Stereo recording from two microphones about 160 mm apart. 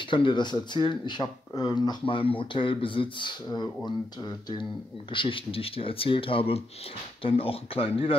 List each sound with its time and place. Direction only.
0.0 s speech: 30° left (ahead or behind)